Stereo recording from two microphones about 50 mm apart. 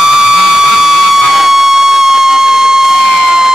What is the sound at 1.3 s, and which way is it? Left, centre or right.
Music, centre.